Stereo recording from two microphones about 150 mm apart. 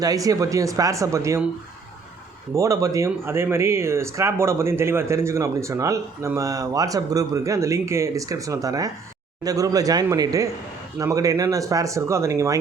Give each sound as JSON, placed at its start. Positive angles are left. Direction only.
{"t": 0.0, "sound": "speech", "side_deg": -25}
{"t": 2.6, "sound": "speech", "side_deg": -20}